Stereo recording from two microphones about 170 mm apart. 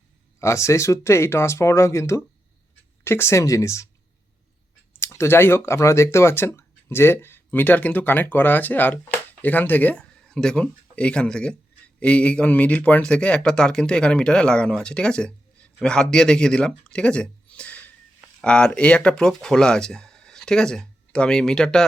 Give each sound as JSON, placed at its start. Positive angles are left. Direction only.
{"t": 0.3, "sound": "speech", "side_deg": 15}
{"t": 4.9, "sound": "speech", "side_deg": 15}